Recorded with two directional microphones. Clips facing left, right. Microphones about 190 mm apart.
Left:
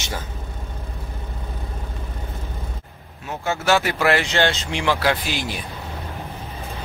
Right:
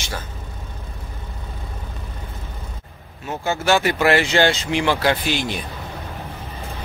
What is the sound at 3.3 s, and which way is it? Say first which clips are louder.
Speech: right 1 dB; centre (ahead or behind).